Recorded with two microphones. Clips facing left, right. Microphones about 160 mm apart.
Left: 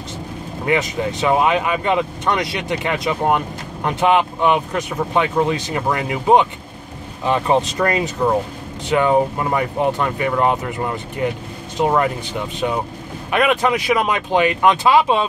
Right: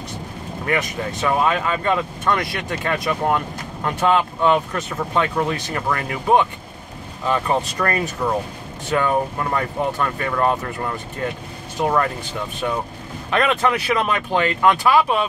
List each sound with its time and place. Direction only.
0.7 s speech: 20° left (ahead or behind)
13.3 s speech: 15° left (ahead or behind)